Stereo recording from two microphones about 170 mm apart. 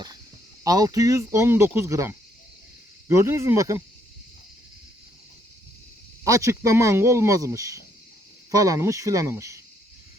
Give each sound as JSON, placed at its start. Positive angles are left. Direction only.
{"t": 0.6, "sound": "speech", "side_deg": -20}
{"t": 6.2, "sound": "speech", "side_deg": -20}